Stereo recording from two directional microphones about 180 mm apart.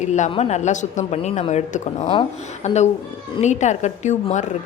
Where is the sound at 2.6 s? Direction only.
40° left (ahead or behind).